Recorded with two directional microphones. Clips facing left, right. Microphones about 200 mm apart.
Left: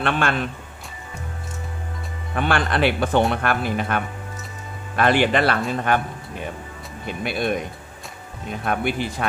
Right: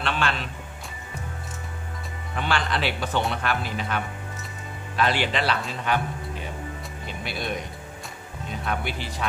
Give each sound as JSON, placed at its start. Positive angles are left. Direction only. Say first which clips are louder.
{"t": 0.0, "sound": "speech", "louder": "left 5 dB", "side_deg": 55}
{"t": 2.3, "sound": "speech", "louder": "left 5 dB", "side_deg": 55}
{"t": 7.1, "sound": "speech", "louder": "left 8 dB", "side_deg": 55}
{"t": 8.6, "sound": "speech", "louder": "left 7 dB", "side_deg": 55}